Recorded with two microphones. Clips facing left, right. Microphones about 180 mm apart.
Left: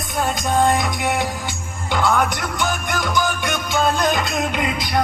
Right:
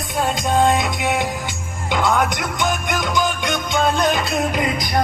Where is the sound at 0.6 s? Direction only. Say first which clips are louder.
Even; 20° right (ahead or behind).